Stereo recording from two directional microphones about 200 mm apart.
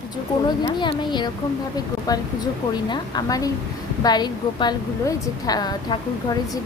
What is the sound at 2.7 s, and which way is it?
A woman's voice, 20° left (ahead or behind).